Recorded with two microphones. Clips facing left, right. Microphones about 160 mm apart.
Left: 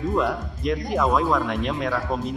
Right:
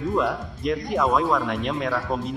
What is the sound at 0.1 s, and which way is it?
A man's voice, centre (ahead or behind).